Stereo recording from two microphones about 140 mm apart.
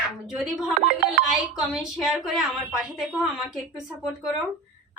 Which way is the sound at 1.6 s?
5° right (ahead or behind).